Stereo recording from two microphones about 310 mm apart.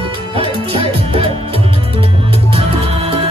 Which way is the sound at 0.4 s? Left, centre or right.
Centre.